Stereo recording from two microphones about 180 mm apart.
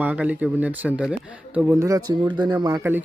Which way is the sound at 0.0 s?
10° right (ahead or behind).